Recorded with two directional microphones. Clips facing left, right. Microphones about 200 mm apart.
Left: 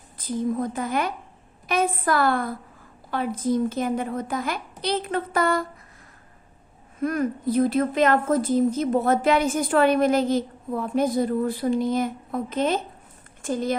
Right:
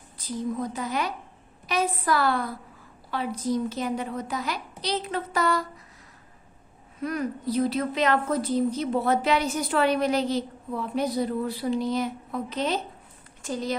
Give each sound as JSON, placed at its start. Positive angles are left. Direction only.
{"t": 0.2, "sound": "a woman's voice", "side_deg": 50}
{"t": 7.0, "sound": "a woman's voice", "side_deg": 50}